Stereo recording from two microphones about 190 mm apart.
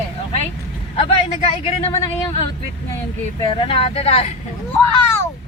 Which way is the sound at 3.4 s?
30° left (ahead or behind).